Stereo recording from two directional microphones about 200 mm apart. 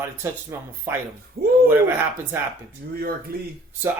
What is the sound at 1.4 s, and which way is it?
Speech, 50° right (ahead or behind).